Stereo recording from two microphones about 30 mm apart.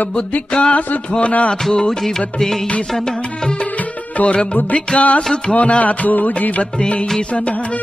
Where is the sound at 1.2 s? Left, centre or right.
Left.